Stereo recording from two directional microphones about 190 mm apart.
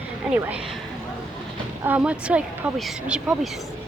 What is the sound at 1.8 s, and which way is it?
Speech, 5° right (ahead or behind).